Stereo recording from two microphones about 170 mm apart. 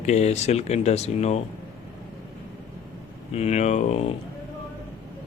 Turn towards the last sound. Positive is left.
turn(degrees=40)  # may be behind; listen again after turning